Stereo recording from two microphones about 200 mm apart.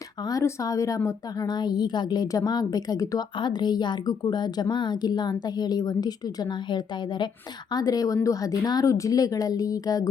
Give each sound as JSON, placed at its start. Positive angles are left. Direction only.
{"t": 0.3, "sound": "a woman's voice", "side_deg": 15}